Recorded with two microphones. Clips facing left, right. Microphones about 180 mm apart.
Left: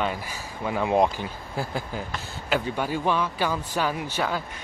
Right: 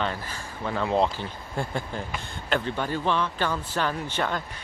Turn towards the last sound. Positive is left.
turn(degrees=10)  # may be behind; listen again after turning